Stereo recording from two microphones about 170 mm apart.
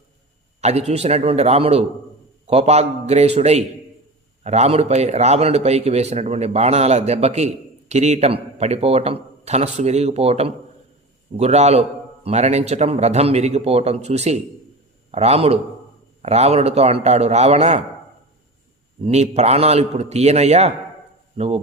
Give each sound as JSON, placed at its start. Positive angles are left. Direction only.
{"t": 0.6, "sound": "speech", "side_deg": -40}
{"t": 19.0, "sound": "speech", "side_deg": -40}